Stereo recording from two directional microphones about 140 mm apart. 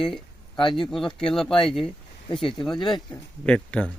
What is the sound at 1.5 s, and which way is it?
Speech, 35° left (ahead or behind).